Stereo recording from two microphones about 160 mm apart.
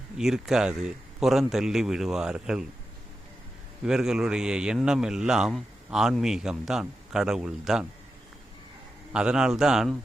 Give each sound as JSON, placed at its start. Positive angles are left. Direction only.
{"t": 0.2, "sound": "a man's voice", "side_deg": -5}
{"t": 3.8, "sound": "a man's voice", "side_deg": -5}
{"t": 9.1, "sound": "a man's voice", "side_deg": -5}